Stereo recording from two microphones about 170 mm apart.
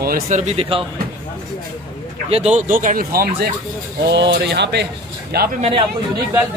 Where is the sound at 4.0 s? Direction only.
85° right.